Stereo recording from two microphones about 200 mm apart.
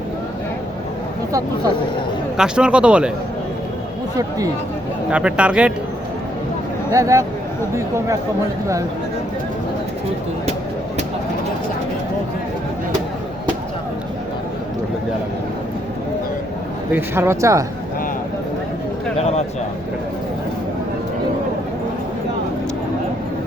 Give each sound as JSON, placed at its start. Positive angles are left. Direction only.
{"t": 2.4, "sound": "speech", "side_deg": -5}
{"t": 5.1, "sound": "speech", "side_deg": -5}
{"t": 6.9, "sound": "speech", "side_deg": -15}
{"t": 16.9, "sound": "speech", "side_deg": -10}